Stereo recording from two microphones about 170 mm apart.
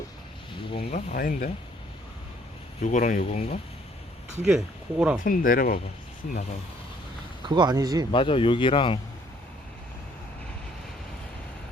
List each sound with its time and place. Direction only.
0.7 s speech: 30° left (ahead or behind)
0.9 s speech: 60° left (ahead or behind)
2.8 s speech: 45° left (ahead or behind)
4.4 s speech: 5° right (ahead or behind)
5.2 s speech: 55° left (ahead or behind)
7.4 s speech: 25° right (ahead or behind)
8.1 s speech: 30° left (ahead or behind)